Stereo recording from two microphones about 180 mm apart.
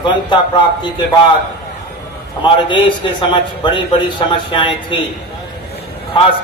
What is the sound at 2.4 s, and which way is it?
A man's voice, 25° left (ahead or behind).